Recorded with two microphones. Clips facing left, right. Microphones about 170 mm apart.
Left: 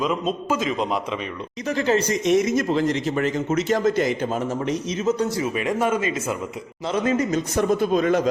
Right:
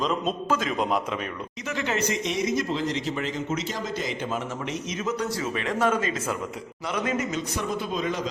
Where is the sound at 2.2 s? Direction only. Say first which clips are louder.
Left 7 dB; 50° left (ahead or behind).